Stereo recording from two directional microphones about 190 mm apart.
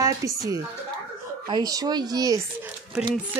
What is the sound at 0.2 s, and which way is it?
Speech, 15° right (ahead or behind).